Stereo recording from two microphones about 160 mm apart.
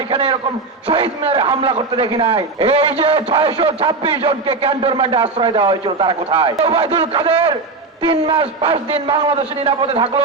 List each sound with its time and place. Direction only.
0.1 s a man's voice: 35° right (ahead or behind)